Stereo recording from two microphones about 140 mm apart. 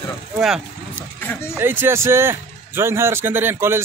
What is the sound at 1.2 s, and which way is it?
Speech, 15° left (ahead or behind).